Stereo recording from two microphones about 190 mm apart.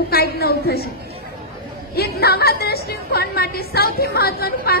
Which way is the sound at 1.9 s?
55° left (ahead or behind).